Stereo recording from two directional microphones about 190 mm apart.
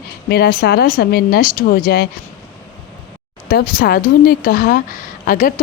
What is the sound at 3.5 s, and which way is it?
A woman's voice, 50° left (ahead or behind).